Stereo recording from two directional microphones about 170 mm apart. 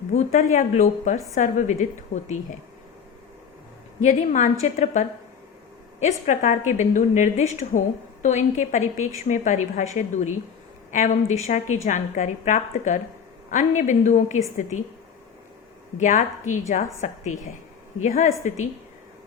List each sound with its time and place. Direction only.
0.1 s a woman's voice: 45° left (ahead or behind)
4.0 s a woman's voice: 45° left (ahead or behind)
16.0 s a woman's voice: 45° left (ahead or behind)